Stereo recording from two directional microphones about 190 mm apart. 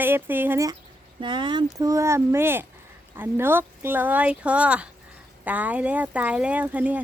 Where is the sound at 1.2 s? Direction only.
25° right (ahead or behind).